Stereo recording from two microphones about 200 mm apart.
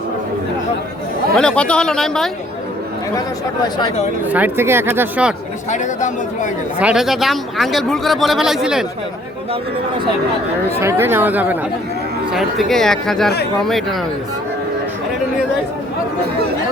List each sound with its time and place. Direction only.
1.4 s speech: 5° left (ahead or behind)
3.2 s speech: 20° left (ahead or behind)
4.3 s speech: 10° right (ahead or behind)
5.7 s speech: 40° left (ahead or behind)
6.7 s speech: 5° right (ahead or behind)
10.7 s speech: 10° right (ahead or behind)